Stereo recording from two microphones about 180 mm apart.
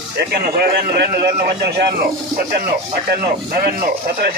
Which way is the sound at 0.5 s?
60° right (ahead or behind).